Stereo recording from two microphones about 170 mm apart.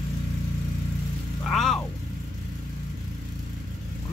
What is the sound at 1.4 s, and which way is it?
Vehicle, centre (ahead or behind).